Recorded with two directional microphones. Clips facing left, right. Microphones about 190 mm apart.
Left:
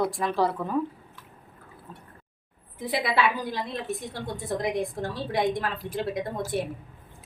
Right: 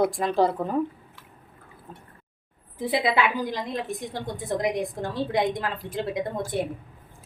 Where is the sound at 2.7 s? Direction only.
25° right (ahead or behind).